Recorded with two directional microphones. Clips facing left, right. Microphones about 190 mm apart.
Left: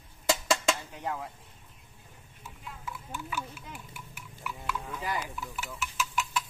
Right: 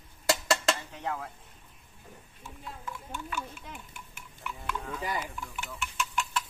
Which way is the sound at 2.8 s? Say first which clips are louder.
Left 1 dB; 5° left (ahead or behind).